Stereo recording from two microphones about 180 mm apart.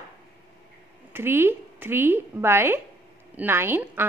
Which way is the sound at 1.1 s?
10° right (ahead or behind).